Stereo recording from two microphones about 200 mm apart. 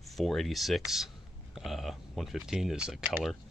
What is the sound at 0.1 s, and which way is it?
Speech, centre (ahead or behind).